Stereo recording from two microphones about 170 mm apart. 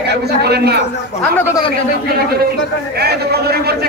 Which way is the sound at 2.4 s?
70° right (ahead or behind).